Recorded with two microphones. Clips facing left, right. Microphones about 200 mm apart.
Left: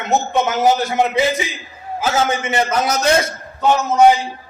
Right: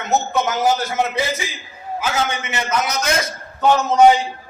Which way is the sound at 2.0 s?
45° left (ahead or behind).